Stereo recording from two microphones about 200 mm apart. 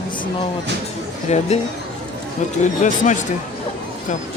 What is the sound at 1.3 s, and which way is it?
Speech, 35° left (ahead or behind).